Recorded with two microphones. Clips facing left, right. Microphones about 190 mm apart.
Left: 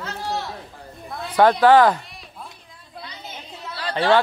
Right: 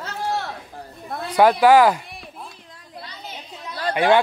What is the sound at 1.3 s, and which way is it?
Speech, 10° right (ahead or behind).